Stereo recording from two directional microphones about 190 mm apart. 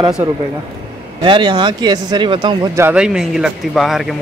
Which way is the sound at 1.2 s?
25° right (ahead or behind).